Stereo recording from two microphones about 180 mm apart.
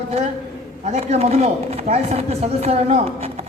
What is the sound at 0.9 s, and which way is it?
Speech, 35° right (ahead or behind).